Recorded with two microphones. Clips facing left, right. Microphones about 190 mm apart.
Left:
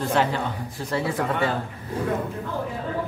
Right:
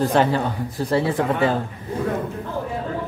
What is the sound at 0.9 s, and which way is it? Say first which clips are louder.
Speech: right 4 dB; 30° right (ahead or behind).